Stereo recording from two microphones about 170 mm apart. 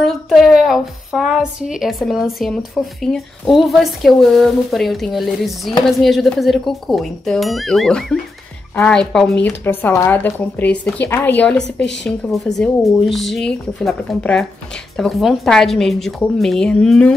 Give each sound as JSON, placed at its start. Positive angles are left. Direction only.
{"t": 0.0, "sound": "a woman's voice", "side_deg": 0}
{"t": 11.6, "sound": "a woman's voice", "side_deg": 90}
{"t": 12.5, "sound": "a woman's voice", "side_deg": 5}